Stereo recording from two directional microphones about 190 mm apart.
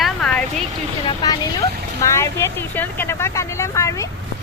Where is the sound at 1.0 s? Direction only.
20° left (ahead or behind).